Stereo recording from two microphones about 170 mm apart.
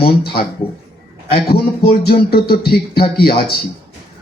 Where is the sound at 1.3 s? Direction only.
65° left (ahead or behind).